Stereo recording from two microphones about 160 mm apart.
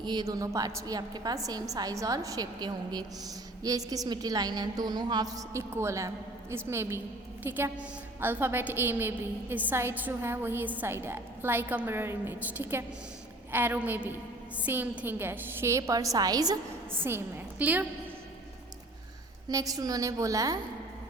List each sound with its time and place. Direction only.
0.0 s a woman's voice: 25° right (ahead or behind); by 17.8 s 10° right (ahead or behind)
19.5 s a woman's voice: 20° right (ahead or behind)